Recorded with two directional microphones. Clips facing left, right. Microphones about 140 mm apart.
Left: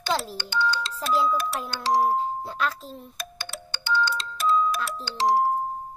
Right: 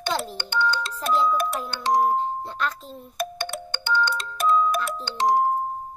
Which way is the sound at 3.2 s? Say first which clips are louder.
Right 9 dB; 55° right (ahead or behind).